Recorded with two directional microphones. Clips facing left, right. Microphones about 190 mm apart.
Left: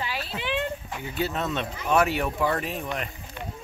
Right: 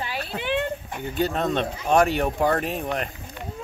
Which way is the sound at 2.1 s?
40° right (ahead or behind).